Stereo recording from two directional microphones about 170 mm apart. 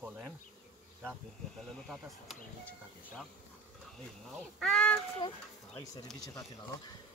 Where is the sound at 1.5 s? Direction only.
Centre (ahead or behind).